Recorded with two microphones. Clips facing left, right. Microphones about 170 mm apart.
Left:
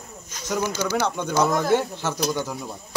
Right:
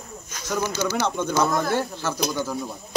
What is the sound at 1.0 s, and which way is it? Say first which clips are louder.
Speech: even; 15° left (ahead or behind).